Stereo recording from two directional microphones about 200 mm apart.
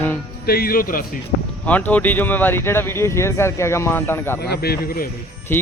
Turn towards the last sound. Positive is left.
turn(degrees=10)  # may be behind; listen again after turning